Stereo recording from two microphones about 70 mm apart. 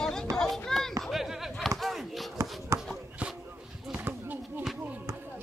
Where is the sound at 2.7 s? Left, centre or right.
Right.